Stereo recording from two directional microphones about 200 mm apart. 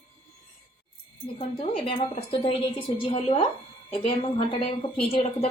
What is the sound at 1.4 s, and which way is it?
A woman's voice, 30° left (ahead or behind).